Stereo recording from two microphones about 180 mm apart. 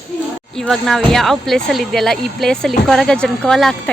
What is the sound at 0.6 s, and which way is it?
A woman's voice, centre (ahead or behind).